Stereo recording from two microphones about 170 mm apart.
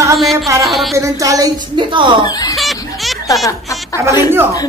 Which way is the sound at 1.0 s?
20° right (ahead or behind).